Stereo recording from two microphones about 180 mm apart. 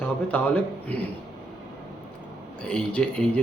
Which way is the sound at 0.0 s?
10° left (ahead or behind).